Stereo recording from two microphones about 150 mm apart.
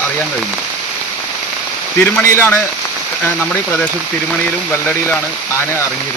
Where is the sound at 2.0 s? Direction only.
15° left (ahead or behind).